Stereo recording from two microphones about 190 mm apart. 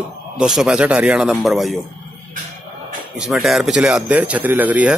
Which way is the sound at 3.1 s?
Centre (ahead or behind).